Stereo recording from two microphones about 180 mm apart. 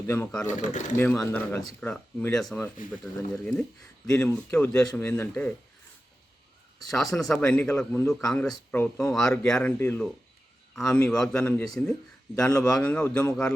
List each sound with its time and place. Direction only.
0.1 s speech: 5° left (ahead or behind)
0.4 s speech: 45° left (ahead or behind)
0.9 s speech: 10° left (ahead or behind)
6.9 s speech: centre (ahead or behind)